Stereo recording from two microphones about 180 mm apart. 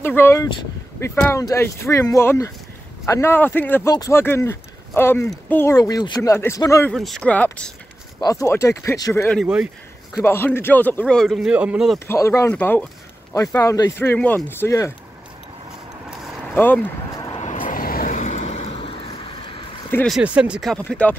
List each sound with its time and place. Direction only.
0.0 s speech: 10° left (ahead or behind)
6.9 s speech: centre (ahead or behind)
8.2 s speech: 20° left (ahead or behind)
9.4 s speech: 5° right (ahead or behind)
10.2 s speech: 15° left (ahead or behind); by 12.0 s 5° right (ahead or behind)
12.1 s speech: 15° left (ahead or behind)
16.5 s speech: 10° left (ahead or behind)
17.4 s vehicle: 45° left (ahead or behind)
20.1 s speech: 5° right (ahead or behind)